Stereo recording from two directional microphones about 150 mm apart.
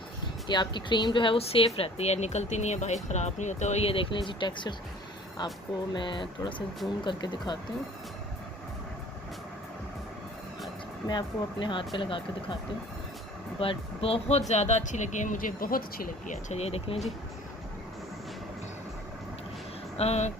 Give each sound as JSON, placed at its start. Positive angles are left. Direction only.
{"t": 0.4, "sound": "speech", "side_deg": 30}
{"t": 11.1, "sound": "speech", "side_deg": 30}
{"t": 13.6, "sound": "speech", "side_deg": 40}
{"t": 20.0, "sound": "speech", "side_deg": 45}